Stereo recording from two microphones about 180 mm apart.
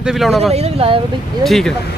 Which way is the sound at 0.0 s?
Centre (ahead or behind).